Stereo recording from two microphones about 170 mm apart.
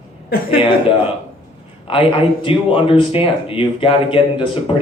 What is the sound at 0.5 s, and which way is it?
Speech, 30° left (ahead or behind).